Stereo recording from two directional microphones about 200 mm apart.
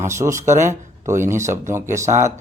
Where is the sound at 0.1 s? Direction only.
15° right (ahead or behind).